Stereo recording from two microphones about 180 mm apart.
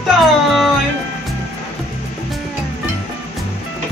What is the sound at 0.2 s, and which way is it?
Music, centre (ahead or behind).